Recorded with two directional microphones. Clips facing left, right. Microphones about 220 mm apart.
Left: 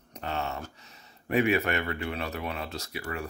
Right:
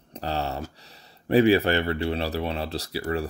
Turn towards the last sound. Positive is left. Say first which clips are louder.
# right 8 dB
turn(degrees=-35)  # may be behind; listen again after turning